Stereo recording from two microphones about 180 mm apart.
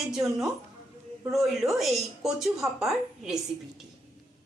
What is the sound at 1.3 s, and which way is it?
A woman's voice, centre (ahead or behind).